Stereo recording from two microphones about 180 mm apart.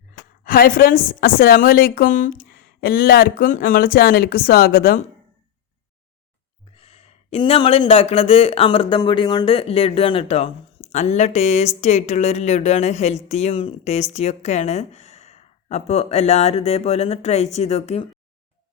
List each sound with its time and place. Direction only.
0.4 s a woman's voice: 55° left (ahead or behind)
6.7 s speech: 35° left (ahead or behind)